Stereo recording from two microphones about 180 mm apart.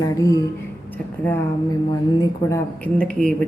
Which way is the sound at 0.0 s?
20° left (ahead or behind).